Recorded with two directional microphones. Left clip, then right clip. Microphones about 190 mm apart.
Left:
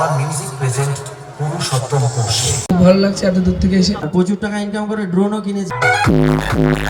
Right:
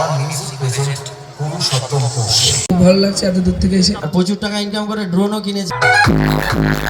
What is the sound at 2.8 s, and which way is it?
A man's voice, 45° right (ahead or behind).